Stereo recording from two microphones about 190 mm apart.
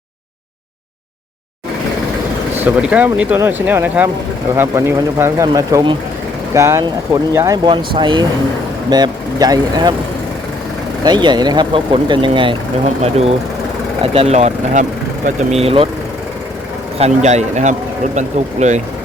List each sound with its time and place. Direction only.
2.6 s speech: 10° right (ahead or behind)
11.0 s speech: 25° right (ahead or behind)
14.0 s speech: 30° right (ahead or behind)
17.0 s speech: 35° right (ahead or behind)